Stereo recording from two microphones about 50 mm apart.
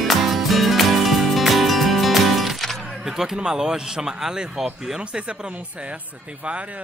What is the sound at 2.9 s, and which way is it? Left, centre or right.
Speech, centre.